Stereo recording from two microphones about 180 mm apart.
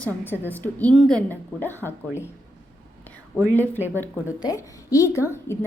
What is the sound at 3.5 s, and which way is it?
A woman's voice, 10° left (ahead or behind).